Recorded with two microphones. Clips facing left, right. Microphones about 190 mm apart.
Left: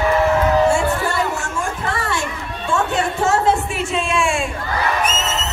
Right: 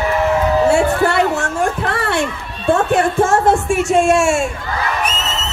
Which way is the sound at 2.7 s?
55° right (ahead or behind).